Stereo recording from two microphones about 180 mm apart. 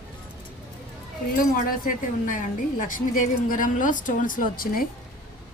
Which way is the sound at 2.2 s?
50° left (ahead or behind).